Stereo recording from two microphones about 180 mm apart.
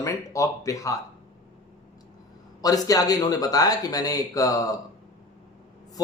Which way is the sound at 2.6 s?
20° left (ahead or behind).